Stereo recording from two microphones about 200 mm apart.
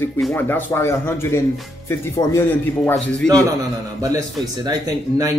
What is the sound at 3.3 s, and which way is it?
Speech, 15° right (ahead or behind).